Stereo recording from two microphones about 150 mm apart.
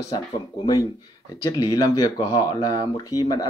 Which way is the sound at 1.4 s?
25° left (ahead or behind).